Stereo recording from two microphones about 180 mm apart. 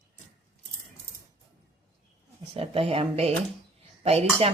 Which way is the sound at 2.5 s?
30° right (ahead or behind).